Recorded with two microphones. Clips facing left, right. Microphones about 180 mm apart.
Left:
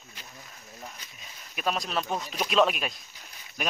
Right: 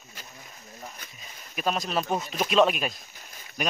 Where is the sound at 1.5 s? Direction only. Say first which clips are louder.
Right 2 dB; centre (ahead or behind).